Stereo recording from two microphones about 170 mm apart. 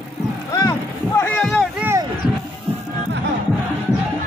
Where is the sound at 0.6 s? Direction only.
15° left (ahead or behind).